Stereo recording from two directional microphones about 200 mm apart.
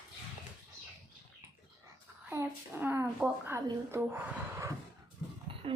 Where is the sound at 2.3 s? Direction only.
10° right (ahead or behind).